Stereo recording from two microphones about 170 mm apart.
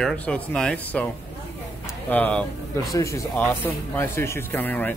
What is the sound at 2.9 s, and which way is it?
Speech, 20° left (ahead or behind).